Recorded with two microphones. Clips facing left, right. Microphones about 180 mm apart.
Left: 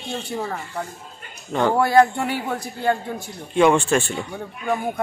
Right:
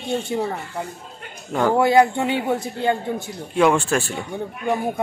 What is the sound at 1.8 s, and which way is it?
A woman's voice, 20° right (ahead or behind).